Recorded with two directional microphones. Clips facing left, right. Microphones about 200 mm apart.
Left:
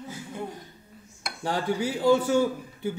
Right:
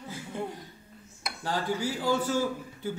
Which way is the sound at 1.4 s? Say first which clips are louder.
Left 3 dB; 20° left (ahead or behind).